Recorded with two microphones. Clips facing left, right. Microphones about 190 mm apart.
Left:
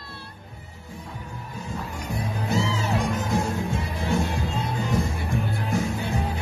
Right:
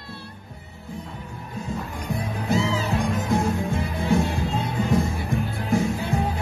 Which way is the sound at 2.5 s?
55° right (ahead or behind).